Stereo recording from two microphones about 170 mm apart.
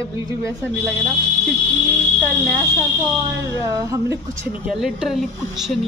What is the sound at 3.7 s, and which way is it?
Speech, 20° right (ahead or behind).